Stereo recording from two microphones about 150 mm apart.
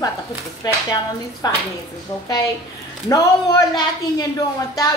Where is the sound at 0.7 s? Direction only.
25° left (ahead or behind).